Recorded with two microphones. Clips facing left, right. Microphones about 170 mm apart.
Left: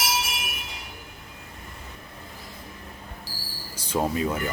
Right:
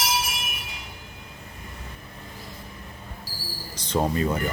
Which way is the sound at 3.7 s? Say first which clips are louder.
Right 1 dB; 10° left (ahead or behind).